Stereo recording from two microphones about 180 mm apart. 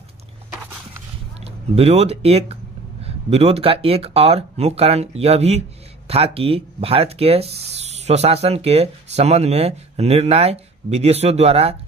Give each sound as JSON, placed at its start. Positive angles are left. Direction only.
{"t": 1.4, "sound": "speech", "side_deg": -35}